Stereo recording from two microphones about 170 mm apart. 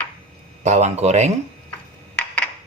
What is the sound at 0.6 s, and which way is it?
Speech, 45° right (ahead or behind).